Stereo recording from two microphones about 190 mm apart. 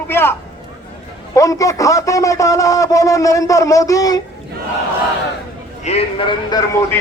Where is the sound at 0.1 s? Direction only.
10° left (ahead or behind).